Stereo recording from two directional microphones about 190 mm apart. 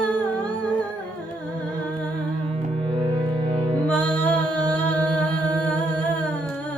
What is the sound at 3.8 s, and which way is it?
Music, 10° left (ahead or behind).